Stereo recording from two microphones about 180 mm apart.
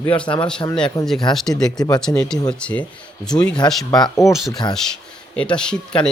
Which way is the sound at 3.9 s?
20° left (ahead or behind).